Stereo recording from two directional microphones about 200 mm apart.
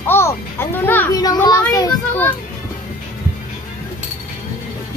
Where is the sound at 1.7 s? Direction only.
15° left (ahead or behind).